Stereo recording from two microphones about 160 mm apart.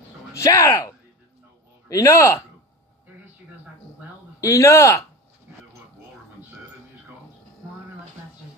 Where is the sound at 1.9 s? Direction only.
20° left (ahead or behind).